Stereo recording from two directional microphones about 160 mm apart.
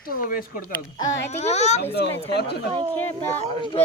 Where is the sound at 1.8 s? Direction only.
90° left.